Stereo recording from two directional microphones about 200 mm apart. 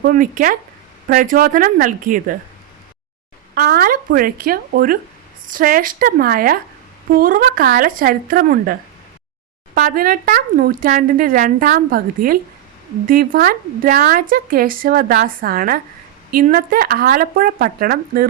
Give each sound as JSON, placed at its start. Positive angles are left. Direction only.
{"t": 0.0, "sound": "speech", "side_deg": -45}
{"t": 3.5, "sound": "speech", "side_deg": -45}
{"t": 9.7, "sound": "speech", "side_deg": -45}